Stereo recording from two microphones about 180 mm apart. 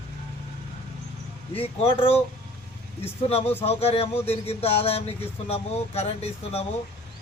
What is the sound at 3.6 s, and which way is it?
Speech, 35° left (ahead or behind).